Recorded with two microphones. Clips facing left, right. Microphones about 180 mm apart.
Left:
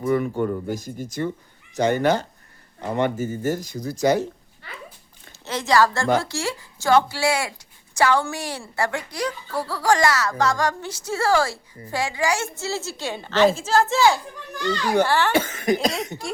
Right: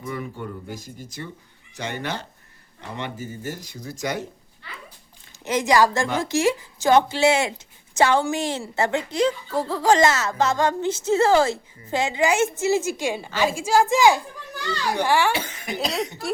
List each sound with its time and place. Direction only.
0.0 s speech: 50° left (ahead or behind); by 4.3 s 35° left (ahead or behind)
5.5 s a woman's voice: 15° right (ahead or behind)
15.3 s speech: 50° left (ahead or behind)